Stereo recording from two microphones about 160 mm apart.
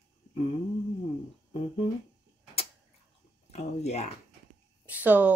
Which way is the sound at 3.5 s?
45° left (ahead or behind).